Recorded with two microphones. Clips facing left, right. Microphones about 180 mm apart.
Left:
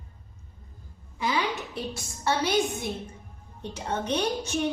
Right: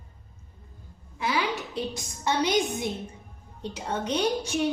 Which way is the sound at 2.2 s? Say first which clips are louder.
Even; 15° right (ahead or behind).